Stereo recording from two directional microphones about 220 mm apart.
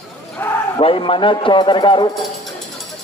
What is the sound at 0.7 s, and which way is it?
A man's voice, 25° left (ahead or behind).